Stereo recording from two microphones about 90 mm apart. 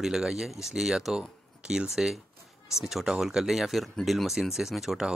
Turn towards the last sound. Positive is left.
turn(degrees=0)  # may be behind; listen again after turning